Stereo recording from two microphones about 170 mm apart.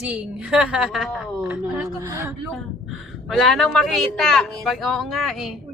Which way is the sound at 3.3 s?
Centre (ahead or behind).